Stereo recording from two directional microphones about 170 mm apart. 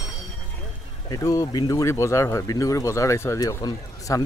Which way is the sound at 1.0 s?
20° left (ahead or behind).